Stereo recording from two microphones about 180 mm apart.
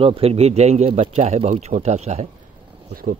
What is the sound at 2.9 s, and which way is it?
Speech, 50° right (ahead or behind).